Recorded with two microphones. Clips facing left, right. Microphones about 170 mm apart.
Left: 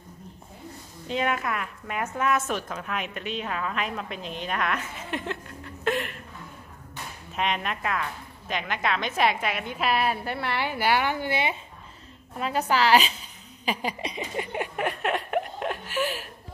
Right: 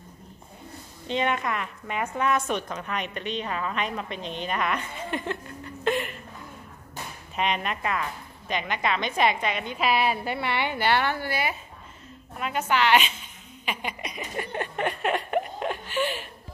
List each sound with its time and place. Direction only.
1.0 s a woman's voice: 5° left (ahead or behind)
7.3 s a woman's voice: centre (ahead or behind); by 11.5 s 20° left (ahead or behind)
12.4 s a woman's voice: 35° left (ahead or behind)
13.7 s a sound: 30° left (ahead or behind); by 14.9 s 10° left (ahead or behind)
14.9 s speech: centre (ahead or behind)